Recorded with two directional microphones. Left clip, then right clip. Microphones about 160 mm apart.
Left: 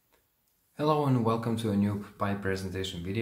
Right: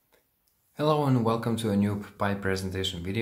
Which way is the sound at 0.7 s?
20° right (ahead or behind).